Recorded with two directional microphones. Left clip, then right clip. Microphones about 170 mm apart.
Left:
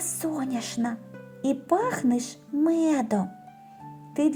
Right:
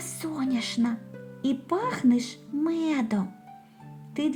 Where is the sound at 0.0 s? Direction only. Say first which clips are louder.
Left 2 dB; 30° left (ahead or behind).